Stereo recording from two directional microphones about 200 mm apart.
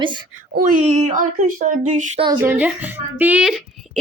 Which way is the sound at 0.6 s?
40° right (ahead or behind).